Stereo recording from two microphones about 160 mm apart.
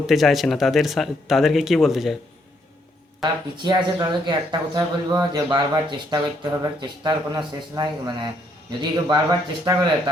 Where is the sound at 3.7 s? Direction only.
30° right (ahead or behind).